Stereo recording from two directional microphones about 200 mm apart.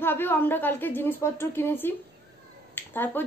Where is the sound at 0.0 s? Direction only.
10° left (ahead or behind).